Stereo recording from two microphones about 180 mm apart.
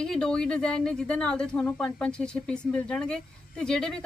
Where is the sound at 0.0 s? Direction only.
5° left (ahead or behind).